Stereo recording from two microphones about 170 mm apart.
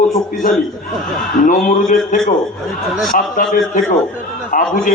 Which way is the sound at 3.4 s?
50° left (ahead or behind).